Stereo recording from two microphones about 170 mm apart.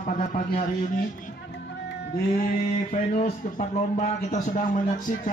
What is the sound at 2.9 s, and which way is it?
A man's voice, 45° left (ahead or behind).